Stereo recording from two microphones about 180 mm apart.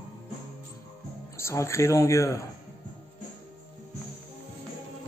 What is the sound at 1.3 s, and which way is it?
Speech, 15° left (ahead or behind).